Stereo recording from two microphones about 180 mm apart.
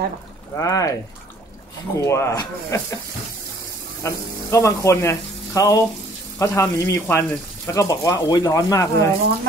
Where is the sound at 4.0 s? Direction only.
15° left (ahead or behind).